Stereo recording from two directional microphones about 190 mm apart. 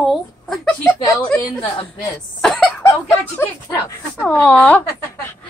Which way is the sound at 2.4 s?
Centre (ahead or behind).